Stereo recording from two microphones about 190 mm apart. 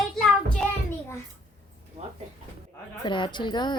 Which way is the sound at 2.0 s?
30° right (ahead or behind).